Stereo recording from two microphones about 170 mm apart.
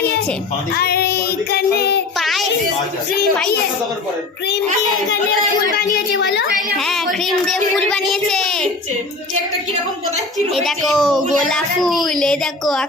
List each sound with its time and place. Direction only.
0.7 s child singing: 70° left (ahead or behind)
2.1 s child singing: centre (ahead or behind)
5.7 s a woman's voice: 90° left
6.7 s a woman's voice: centre (ahead or behind)
10.3 s a woman's voice: centre (ahead or behind)